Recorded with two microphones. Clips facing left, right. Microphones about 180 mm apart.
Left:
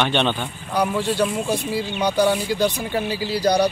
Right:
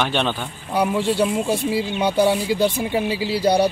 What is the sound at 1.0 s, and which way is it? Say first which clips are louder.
Speech: right 2 dB; 25° right (ahead or behind).